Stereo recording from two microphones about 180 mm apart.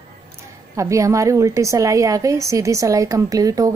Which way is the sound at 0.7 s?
15° right (ahead or behind).